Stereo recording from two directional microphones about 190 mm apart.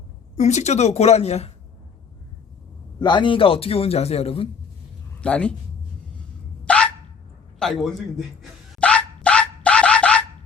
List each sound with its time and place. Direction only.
0.3 s a woman's voice: 35° left (ahead or behind)
3.0 s a man's voice: 25° left (ahead or behind)
5.2 s speech: 5° left (ahead or behind)
6.7 s dog: 5° left (ahead or behind)
7.6 s a man's voice: centre (ahead or behind)
8.4 s dog: 5° left (ahead or behind)